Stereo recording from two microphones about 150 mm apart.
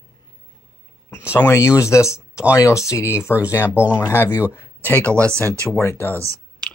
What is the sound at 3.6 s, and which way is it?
Speech, 10° right (ahead or behind).